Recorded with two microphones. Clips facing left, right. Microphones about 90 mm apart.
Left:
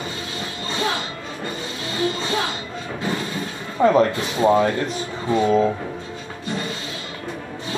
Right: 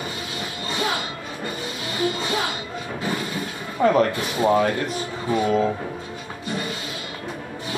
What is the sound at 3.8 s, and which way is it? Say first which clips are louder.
Speech: left 2 dB; 25° left (ahead or behind).